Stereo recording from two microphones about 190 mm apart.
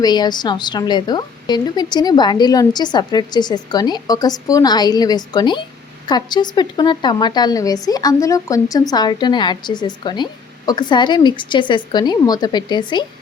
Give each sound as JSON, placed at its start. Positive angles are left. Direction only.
{"t": 0.0, "sound": "a woman's voice", "side_deg": 20}